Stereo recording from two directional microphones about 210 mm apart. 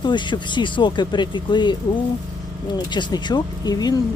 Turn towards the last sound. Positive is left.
turn(degrees=20)  # may be behind; listen again after turning